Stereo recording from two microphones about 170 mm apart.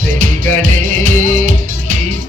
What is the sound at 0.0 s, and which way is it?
Music, 50° right (ahead or behind).